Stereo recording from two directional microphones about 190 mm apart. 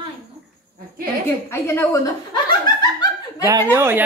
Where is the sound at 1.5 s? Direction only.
15° left (ahead or behind).